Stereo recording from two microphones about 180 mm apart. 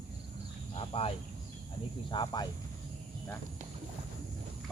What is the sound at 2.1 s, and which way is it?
Speech, 25° left (ahead or behind).